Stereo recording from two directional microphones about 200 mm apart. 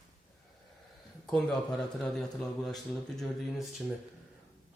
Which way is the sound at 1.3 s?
Centre (ahead or behind).